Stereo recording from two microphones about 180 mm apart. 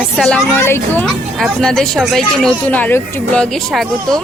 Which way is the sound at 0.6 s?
15° left (ahead or behind).